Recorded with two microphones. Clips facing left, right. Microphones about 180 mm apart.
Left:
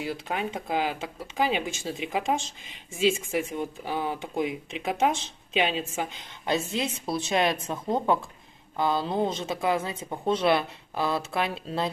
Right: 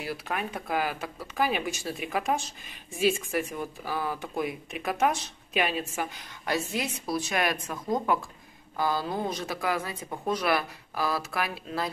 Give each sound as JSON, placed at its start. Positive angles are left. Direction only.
{"t": 0.0, "sound": "speech", "side_deg": 20}